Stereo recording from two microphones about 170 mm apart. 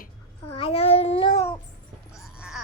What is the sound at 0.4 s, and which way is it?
Child singing, 35° left (ahead or behind).